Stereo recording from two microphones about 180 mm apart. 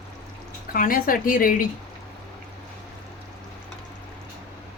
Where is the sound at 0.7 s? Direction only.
50° left (ahead or behind).